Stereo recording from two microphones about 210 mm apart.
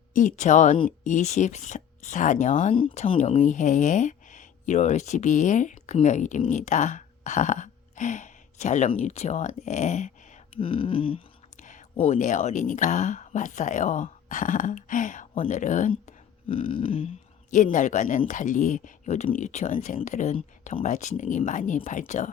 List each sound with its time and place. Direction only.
0.1 s speech: 40° left (ahead or behind)
10.5 s a sound: 25° left (ahead or behind)
11.6 s speech: 35° left (ahead or behind)
17.5 s speech: 35° left (ahead or behind)